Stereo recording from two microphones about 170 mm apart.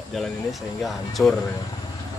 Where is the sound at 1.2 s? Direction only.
10° left (ahead or behind).